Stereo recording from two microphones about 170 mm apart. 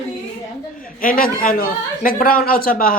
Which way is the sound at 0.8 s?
55° left (ahead or behind).